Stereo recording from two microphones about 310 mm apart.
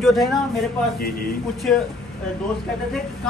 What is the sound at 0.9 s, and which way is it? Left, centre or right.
Speech, left.